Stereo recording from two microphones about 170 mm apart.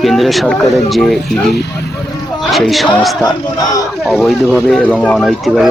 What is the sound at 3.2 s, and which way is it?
Speech, 20° left (ahead or behind).